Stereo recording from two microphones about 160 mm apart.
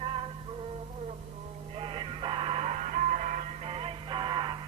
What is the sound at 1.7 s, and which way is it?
Music, 35° right (ahead or behind).